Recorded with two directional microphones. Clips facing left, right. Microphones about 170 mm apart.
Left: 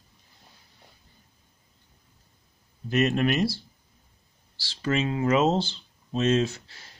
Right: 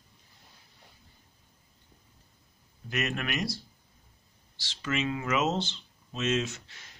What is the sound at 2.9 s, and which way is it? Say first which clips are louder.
Speech: left 9 dB; 30° left (ahead or behind).